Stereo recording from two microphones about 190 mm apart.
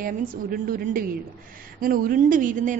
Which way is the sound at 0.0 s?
50° right (ahead or behind).